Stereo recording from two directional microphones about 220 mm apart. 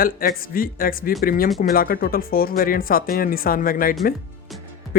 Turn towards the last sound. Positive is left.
turn(degrees=40)  # may be behind; listen again after turning